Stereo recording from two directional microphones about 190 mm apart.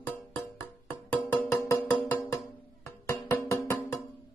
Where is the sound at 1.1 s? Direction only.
10° left (ahead or behind).